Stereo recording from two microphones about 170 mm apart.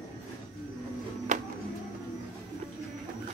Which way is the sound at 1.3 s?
45° right (ahead or behind).